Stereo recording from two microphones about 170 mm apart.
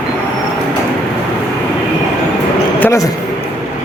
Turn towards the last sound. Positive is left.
turn(degrees=15)  # may be behind; listen again after turning